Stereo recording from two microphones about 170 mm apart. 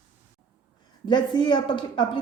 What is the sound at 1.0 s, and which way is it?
A woman's voice, 25° left (ahead or behind).